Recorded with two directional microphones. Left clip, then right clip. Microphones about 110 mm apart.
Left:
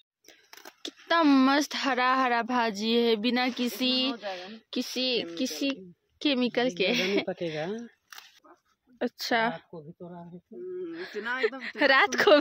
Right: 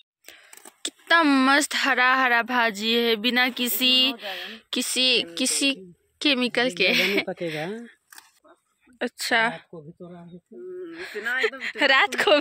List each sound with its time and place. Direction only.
0.3 s speech: centre (ahead or behind)
6.1 s speech: 5° left (ahead or behind)
8.5 s a sound: 15° left (ahead or behind)
10.9 s speech: 20° left (ahead or behind)
11.9 s speech: 35° left (ahead or behind)